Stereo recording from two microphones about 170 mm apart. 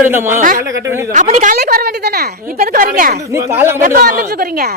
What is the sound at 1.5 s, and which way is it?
Speech, 65° right (ahead or behind).